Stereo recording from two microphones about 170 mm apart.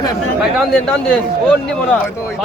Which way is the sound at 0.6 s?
5° left (ahead or behind).